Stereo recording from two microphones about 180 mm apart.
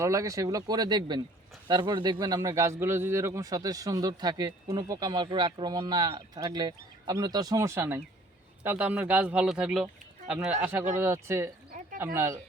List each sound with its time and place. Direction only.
0.0 s a man's voice: 15° right (ahead or behind)